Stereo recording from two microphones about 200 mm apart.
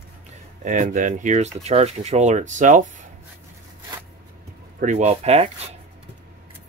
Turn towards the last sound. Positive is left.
turn(degrees=-30)  # may be behind; listen again after turning